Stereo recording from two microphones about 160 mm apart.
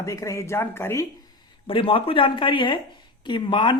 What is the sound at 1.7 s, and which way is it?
Speech, 35° left (ahead or behind).